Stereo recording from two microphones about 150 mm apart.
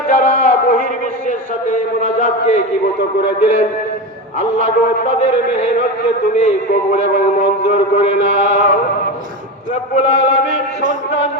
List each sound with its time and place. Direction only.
0.1 s a sound: 65° left (ahead or behind)
3.4 s chant: 45° left (ahead or behind)
6.9 s chant: 50° left (ahead or behind)
9.9 s chant: 50° left (ahead or behind)